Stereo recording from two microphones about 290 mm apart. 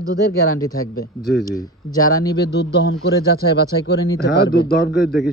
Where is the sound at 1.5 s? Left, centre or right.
Centre.